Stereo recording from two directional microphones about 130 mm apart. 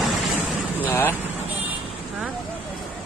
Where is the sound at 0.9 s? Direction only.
15° left (ahead or behind).